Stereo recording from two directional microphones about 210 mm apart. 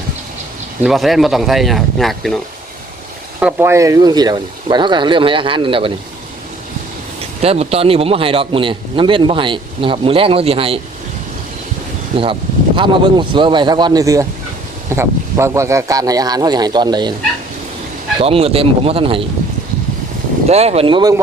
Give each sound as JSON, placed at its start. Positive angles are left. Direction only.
{"t": 0.8, "sound": "speech", "side_deg": 0}
{"t": 3.4, "sound": "a man's voice", "side_deg": -10}
{"t": 7.4, "sound": "a man's voice", "side_deg": -30}
{"t": 12.1, "sound": "a man's voice", "side_deg": -25}
{"t": 18.2, "sound": "a man's voice", "side_deg": -25}
{"t": 20.5, "sound": "a man's voice", "side_deg": -30}